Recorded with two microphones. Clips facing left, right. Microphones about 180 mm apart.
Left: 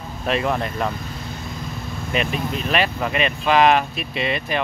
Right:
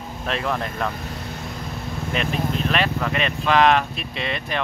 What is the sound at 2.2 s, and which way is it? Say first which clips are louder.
Speech: left 1 dB; 5° left (ahead or behind).